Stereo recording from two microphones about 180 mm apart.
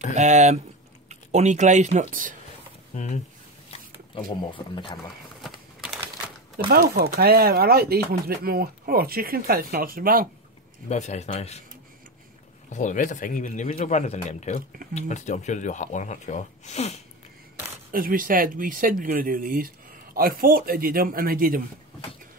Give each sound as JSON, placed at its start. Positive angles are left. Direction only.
{"t": 0.1, "sound": "speech", "side_deg": -40}
{"t": 2.9, "sound": "speech", "side_deg": 40}
{"t": 3.7, "sound": "speech", "side_deg": 25}
{"t": 5.4, "sound": "a sound", "side_deg": 0}
{"t": 6.7, "sound": "speech", "side_deg": -60}
{"t": 10.9, "sound": "speech", "side_deg": 40}
{"t": 12.6, "sound": "speech", "side_deg": 45}
{"t": 17.9, "sound": "speech", "side_deg": -55}